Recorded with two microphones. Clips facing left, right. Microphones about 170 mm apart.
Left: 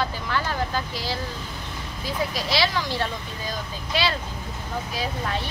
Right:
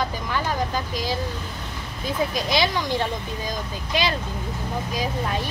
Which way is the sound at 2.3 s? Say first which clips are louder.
Even; 20° right (ahead or behind).